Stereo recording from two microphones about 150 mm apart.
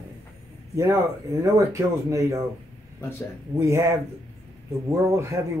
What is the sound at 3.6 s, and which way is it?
Speech, 20° right (ahead or behind).